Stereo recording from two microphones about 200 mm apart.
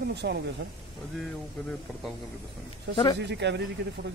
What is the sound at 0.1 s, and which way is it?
Speech, 60° right (ahead or behind).